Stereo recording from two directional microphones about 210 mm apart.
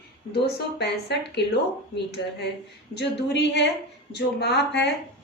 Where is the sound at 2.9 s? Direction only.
55° left (ahead or behind).